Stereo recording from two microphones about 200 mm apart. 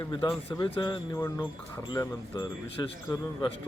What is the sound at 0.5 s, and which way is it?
Speech, 20° left (ahead or behind).